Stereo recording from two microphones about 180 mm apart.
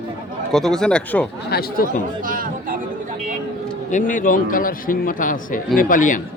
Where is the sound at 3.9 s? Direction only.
45° left (ahead or behind).